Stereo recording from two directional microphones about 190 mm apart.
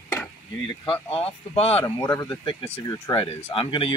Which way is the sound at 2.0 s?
20° left (ahead or behind).